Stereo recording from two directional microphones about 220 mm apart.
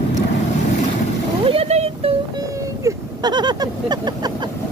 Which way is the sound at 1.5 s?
30° right (ahead or behind).